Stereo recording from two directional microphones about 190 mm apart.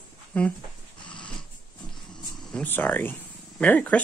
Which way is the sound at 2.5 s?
10° left (ahead or behind).